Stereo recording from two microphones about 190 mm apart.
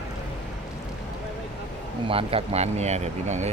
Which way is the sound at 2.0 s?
30° right (ahead or behind).